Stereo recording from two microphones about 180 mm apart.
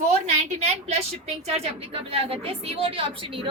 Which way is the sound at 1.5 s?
35° right (ahead or behind).